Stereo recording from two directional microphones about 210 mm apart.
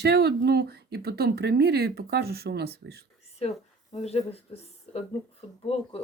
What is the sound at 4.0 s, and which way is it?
Speech, 30° left (ahead or behind).